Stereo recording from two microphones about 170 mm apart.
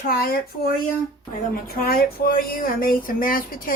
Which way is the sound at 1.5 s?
60° left (ahead or behind).